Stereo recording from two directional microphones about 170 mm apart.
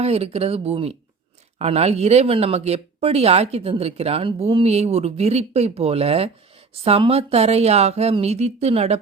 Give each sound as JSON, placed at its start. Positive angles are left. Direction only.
{"t": 0.0, "sound": "speech", "side_deg": -35}